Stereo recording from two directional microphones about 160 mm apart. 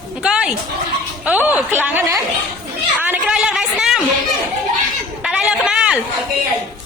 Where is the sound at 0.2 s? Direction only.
5° right (ahead or behind).